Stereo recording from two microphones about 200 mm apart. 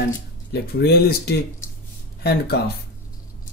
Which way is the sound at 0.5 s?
55° left (ahead or behind).